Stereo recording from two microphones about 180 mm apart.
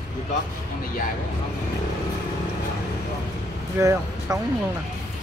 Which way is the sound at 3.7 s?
15° right (ahead or behind).